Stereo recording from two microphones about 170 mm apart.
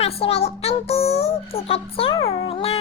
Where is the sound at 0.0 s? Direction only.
35° left (ahead or behind).